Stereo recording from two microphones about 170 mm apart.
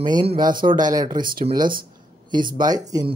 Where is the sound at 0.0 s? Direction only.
25° right (ahead or behind).